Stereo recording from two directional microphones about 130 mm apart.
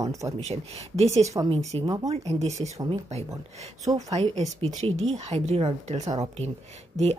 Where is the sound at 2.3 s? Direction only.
55° right (ahead or behind).